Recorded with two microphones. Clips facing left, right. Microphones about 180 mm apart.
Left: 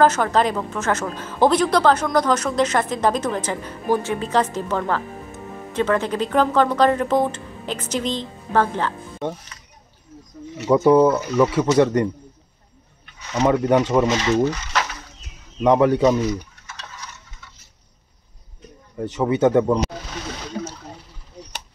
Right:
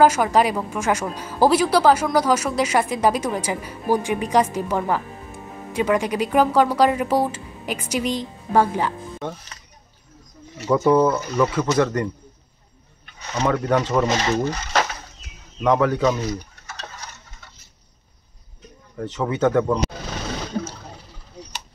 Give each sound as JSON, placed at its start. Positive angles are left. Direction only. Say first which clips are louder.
{"t": 0.0, "sound": "speech", "louder": "right 1 dB", "side_deg": -10}
{"t": 10.7, "sound": "speech", "louder": "left 3 dB", "side_deg": 20}
{"t": 13.5, "sound": "speech", "louder": "left 3 dB", "side_deg": 20}
{"t": 14.0, "sound": "speech", "louder": "left 2 dB", "side_deg": -40}
{"t": 15.6, "sound": "speech", "louder": "left 3 dB", "side_deg": 20}
{"t": 16.3, "sound": "tick-tock", "louder": "left 3 dB", "side_deg": -35}
{"t": 18.9, "sound": "speech", "louder": "left 3 dB", "side_deg": 15}